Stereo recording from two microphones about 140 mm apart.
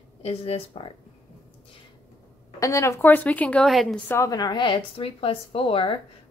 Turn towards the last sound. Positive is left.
turn(degrees=40)  # may be behind; listen again after turning